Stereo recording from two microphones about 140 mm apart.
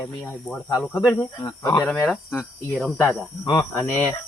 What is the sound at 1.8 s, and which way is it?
Speech, centre (ahead or behind).